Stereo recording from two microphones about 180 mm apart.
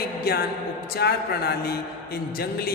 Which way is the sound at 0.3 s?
55° left (ahead or behind).